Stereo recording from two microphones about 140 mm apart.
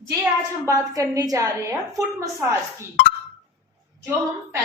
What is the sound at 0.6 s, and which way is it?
A woman's voice, 25° right (ahead or behind).